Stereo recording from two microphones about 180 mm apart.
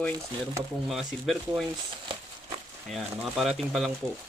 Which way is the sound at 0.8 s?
Centre (ahead or behind).